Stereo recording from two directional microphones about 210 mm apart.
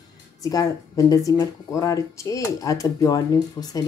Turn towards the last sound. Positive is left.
turn(degrees=15)  # may be behind; listen again after turning